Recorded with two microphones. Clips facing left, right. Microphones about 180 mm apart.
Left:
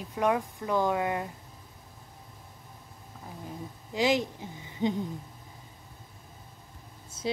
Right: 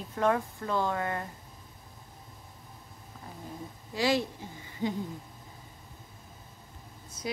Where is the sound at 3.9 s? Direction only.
20° left (ahead or behind).